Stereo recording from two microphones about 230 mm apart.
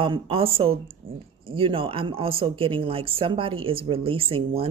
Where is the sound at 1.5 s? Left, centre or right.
Right.